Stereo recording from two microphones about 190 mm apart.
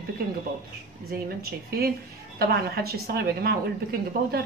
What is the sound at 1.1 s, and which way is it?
A woman's voice, 55° right (ahead or behind).